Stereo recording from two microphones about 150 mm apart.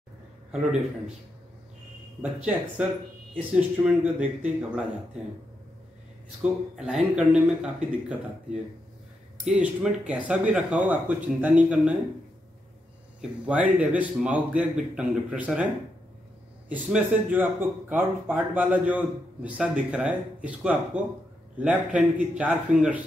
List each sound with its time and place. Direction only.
0.5 s speech: 5° right (ahead or behind)
2.8 s speech: 5° right (ahead or behind)
6.4 s speech: 5° right (ahead or behind)
13.2 s speech: 10° right (ahead or behind)
16.6 s speech: 10° right (ahead or behind)